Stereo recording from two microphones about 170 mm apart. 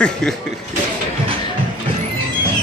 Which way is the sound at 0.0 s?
5° left (ahead or behind).